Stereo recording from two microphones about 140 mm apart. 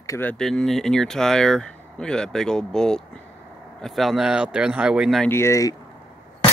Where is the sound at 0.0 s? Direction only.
25° left (ahead or behind).